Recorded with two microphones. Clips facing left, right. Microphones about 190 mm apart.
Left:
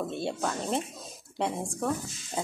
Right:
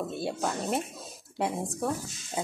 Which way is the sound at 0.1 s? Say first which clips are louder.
Even; 5° right (ahead or behind).